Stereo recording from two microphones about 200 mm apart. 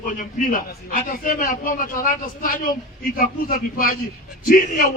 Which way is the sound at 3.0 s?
45° left (ahead or behind).